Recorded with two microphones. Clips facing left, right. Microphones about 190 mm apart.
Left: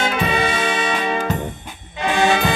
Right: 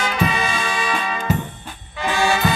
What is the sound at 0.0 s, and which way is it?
Music, 25° left (ahead or behind).